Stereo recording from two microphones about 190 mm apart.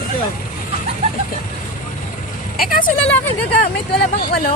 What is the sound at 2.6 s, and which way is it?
Speech, 50° left (ahead or behind).